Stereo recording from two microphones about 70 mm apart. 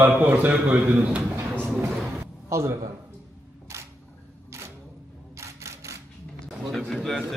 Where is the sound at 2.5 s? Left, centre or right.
Right.